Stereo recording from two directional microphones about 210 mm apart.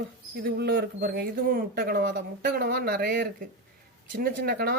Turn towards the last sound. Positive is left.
turn(degrees=-45)  # may be behind; listen again after turning